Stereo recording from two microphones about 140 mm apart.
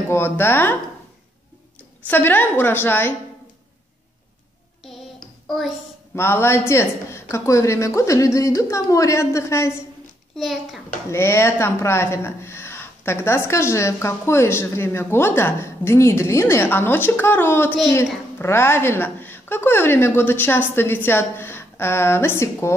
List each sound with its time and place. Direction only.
0.1 s speech: 15° left (ahead or behind)
2.0 s speech: 15° left (ahead or behind)
6.1 s speech: 15° left (ahead or behind)
10.3 s a child's voice: centre (ahead or behind)
11.1 s speech: 20° left (ahead or behind)